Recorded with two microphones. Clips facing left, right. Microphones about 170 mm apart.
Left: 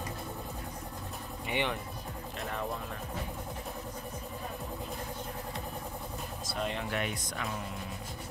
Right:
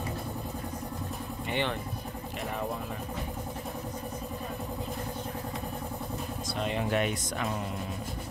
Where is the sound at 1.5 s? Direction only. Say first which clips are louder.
Right 1 dB; 10° left (ahead or behind).